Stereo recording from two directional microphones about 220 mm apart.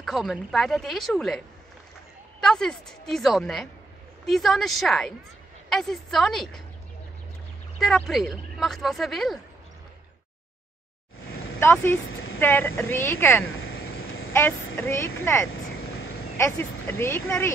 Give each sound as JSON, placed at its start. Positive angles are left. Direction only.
{"t": 0.0, "sound": "speech", "side_deg": 0}
{"t": 2.4, "sound": "speech", "side_deg": 0}
{"t": 7.8, "sound": "speech", "side_deg": 0}
{"t": 11.6, "sound": "speech", "side_deg": 10}
{"t": 13.5, "sound": "vehicle", "side_deg": 65}
{"t": 14.3, "sound": "speech", "side_deg": 10}